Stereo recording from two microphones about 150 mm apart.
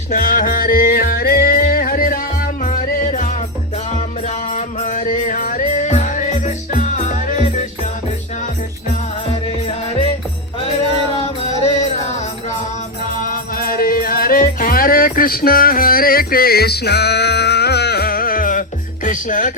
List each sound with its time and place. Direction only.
0.1 s music: 60° left (ahead or behind)
2.6 s music: 55° left (ahead or behind)
13.2 s music: 70° left (ahead or behind)
19.0 s beatboxing: 60° left (ahead or behind)